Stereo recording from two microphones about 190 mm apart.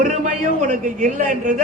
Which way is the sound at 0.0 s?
45° right (ahead or behind).